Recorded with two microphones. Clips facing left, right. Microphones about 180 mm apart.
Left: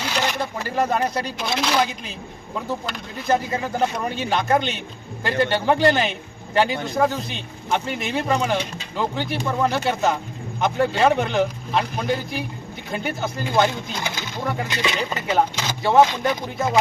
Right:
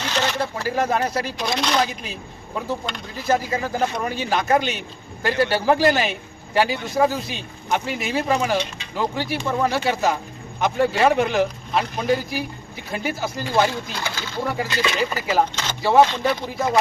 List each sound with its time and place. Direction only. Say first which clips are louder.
0.0 s a sound: right 1 dB; 10° left (ahead or behind)
0.3 s speech: right 1 dB; centre (ahead or behind)
13.9 s speech: right 1 dB; 20° left (ahead or behind)
14.4 s speech: right 1 dB; 5° right (ahead or behind)
16.0 s speech: even; 15° left (ahead or behind)
16.5 s speech: right 1 dB; centre (ahead or behind)